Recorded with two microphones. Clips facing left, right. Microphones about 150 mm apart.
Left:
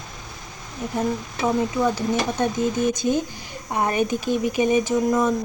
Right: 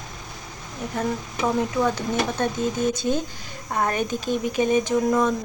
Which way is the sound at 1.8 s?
10° left (ahead or behind).